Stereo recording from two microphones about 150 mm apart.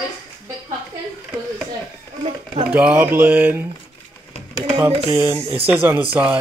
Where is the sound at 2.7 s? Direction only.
10° right (ahead or behind).